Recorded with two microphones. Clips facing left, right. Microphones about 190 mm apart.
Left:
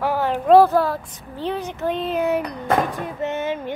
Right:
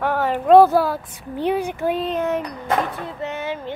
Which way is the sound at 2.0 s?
10° left (ahead or behind).